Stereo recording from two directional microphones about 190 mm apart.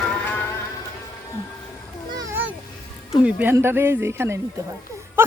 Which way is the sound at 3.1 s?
5° right (ahead or behind).